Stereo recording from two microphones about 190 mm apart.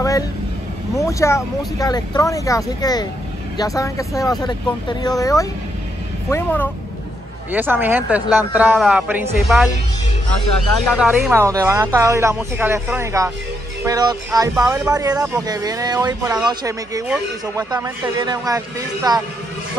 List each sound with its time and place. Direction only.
0.9 s vehicle: 15° left (ahead or behind)
1.8 s speech: 20° left (ahead or behind)
7.5 s speech: 10° right (ahead or behind)
10.9 s speech: 5° right (ahead or behind); by 19.2 s 20° right (ahead or behind)